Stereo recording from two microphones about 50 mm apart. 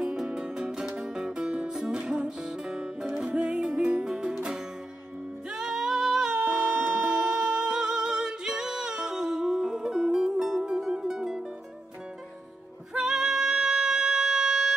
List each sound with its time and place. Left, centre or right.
0.0 s music: centre
12.9 s music: centre